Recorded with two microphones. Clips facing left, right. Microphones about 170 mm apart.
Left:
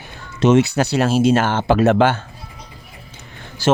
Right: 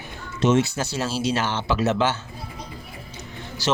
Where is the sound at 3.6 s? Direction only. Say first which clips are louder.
Left 7 dB; 50° left (ahead or behind).